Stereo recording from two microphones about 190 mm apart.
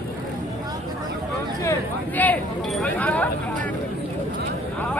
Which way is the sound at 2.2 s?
5° left (ahead or behind).